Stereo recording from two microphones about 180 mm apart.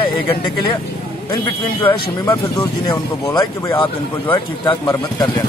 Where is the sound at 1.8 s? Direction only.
10° left (ahead or behind).